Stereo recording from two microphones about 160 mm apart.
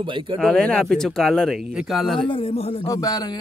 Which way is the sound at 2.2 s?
35° left (ahead or behind).